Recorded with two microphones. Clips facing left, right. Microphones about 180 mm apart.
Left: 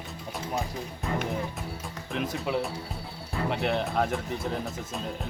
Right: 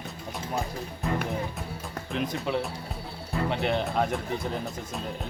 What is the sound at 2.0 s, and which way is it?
Speech, 5° left (ahead or behind).